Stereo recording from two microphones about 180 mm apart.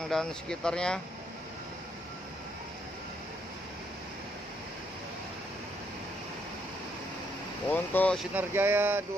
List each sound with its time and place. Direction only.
0.1 s speech: 5° left (ahead or behind)
7.7 s speech: 10° left (ahead or behind)
8.4 s speech: 10° right (ahead or behind)